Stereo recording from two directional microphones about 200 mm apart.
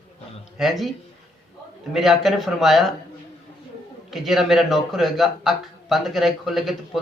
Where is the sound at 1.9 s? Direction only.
Centre (ahead or behind).